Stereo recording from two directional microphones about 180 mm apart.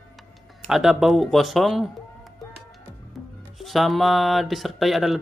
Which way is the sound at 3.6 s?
Centre (ahead or behind).